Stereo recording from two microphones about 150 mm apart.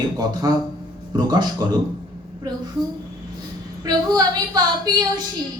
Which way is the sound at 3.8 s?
25° right (ahead or behind).